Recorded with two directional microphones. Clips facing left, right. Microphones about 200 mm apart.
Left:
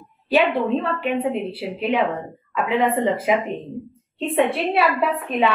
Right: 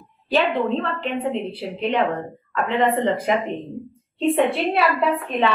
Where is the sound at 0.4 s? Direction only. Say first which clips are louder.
Left 1 dB; 10° left (ahead or behind).